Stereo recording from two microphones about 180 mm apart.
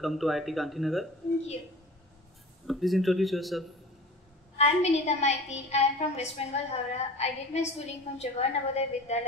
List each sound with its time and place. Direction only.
0.0 s speech: centre (ahead or behind)
2.6 s speech: centre (ahead or behind)
4.6 s a woman's voice: 35° left (ahead or behind)